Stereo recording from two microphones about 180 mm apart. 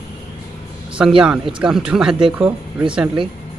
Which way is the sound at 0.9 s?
5° right (ahead or behind).